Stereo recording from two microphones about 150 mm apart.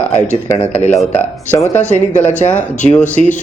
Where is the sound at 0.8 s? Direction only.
50° left (ahead or behind).